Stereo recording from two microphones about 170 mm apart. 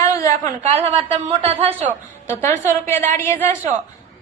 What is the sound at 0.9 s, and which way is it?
Speech, 35° right (ahead or behind).